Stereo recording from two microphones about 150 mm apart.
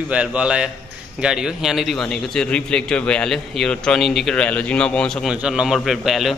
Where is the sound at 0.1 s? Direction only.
10° right (ahead or behind).